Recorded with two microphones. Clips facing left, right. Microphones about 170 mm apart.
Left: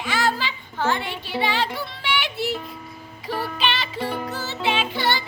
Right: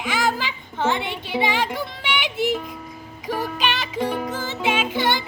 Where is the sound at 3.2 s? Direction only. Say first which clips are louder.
Right 1 dB; 15° right (ahead or behind).